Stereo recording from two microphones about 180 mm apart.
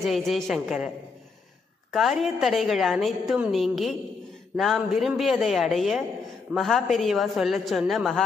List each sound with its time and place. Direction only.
0.0 s a woman's voice: centre (ahead or behind)